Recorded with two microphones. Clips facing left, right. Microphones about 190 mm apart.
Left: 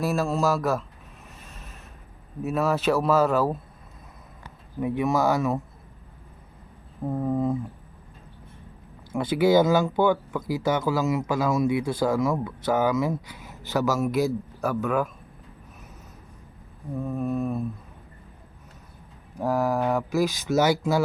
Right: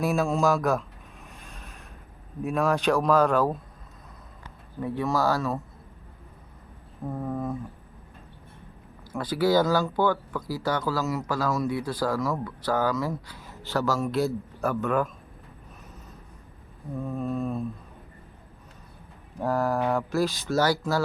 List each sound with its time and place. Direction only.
0.0 s speech: centre (ahead or behind)
1.4 s a sound: centre (ahead or behind)
2.4 s speech: 5° left (ahead or behind); by 5.5 s 20° left (ahead or behind)
7.1 s speech: 15° left (ahead or behind)
9.1 s speech: 25° left (ahead or behind)
13.5 s a sound: 20° left (ahead or behind)
13.9 s speech: 5° left (ahead or behind)
17.0 s speech: 5° left (ahead or behind)
19.4 s speech: 5° left (ahead or behind)